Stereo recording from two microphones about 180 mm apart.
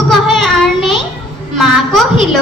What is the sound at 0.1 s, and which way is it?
Child singing, centre (ahead or behind).